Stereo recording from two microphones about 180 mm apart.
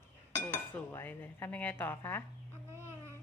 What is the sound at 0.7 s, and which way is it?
Speech, 10° left (ahead or behind).